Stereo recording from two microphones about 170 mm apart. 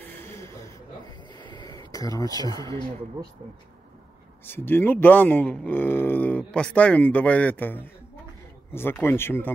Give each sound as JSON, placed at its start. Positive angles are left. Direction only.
{"t": 1.5, "sound": "speech", "side_deg": 25}
{"t": 4.5, "sound": "speech", "side_deg": 10}